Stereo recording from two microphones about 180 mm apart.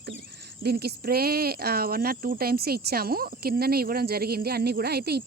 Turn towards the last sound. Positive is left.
turn(degrees=-60)  # may be behind; listen again after turning